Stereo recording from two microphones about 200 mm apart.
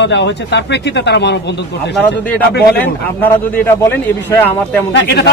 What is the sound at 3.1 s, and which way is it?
A man's voice, 10° left (ahead or behind).